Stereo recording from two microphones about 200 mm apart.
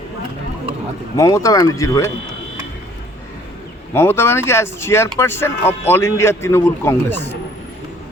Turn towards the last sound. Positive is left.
turn(degrees=10)  # may be behind; listen again after turning